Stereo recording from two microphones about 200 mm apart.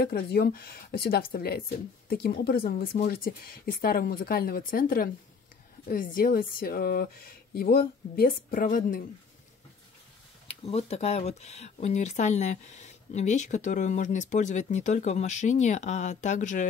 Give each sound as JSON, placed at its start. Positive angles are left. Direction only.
{"t": 0.0, "sound": "speech", "side_deg": 50}
{"t": 10.6, "sound": "speech", "side_deg": 30}